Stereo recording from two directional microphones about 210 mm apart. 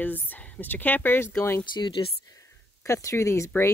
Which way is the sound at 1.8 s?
25° left (ahead or behind).